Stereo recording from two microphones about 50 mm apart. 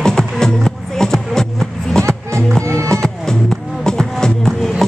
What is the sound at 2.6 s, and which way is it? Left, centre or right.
Music, right.